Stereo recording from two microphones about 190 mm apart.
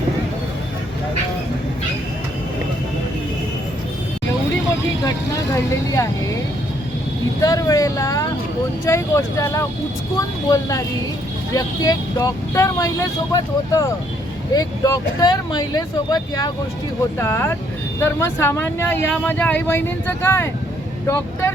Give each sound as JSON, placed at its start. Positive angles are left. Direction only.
{"t": 7.4, "sound": "speech", "side_deg": 20}